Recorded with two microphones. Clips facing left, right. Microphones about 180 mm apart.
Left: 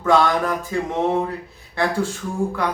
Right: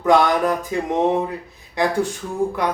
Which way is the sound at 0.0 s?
15° right (ahead or behind).